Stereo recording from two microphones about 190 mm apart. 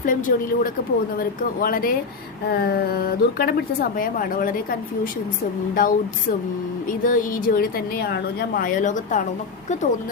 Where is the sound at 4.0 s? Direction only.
45° left (ahead or behind).